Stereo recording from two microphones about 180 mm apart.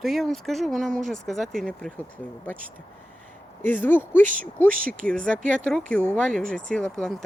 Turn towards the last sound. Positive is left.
turn(degrees=0)  # may be behind; listen again after turning